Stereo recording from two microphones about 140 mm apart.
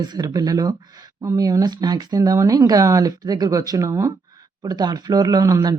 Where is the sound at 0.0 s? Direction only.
30° right (ahead or behind).